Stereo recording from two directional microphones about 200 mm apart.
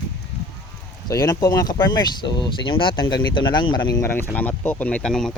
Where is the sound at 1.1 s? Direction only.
20° left (ahead or behind).